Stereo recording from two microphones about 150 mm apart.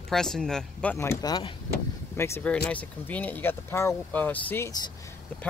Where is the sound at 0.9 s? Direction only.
20° left (ahead or behind).